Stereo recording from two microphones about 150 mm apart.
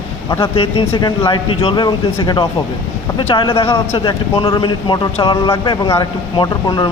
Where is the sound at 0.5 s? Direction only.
35° left (ahead or behind).